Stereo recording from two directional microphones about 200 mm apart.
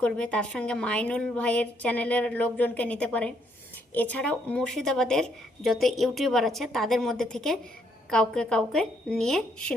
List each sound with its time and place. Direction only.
0.0 s a woman's voice: 5° left (ahead or behind)